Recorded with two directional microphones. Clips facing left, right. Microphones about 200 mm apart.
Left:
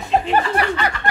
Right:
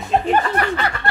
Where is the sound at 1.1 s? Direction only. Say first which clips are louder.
Left 1 dB; 15° left (ahead or behind).